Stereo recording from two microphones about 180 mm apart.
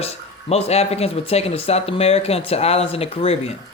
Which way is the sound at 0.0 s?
35° left (ahead or behind).